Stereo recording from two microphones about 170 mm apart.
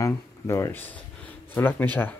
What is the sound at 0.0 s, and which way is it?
Speech, 15° left (ahead or behind).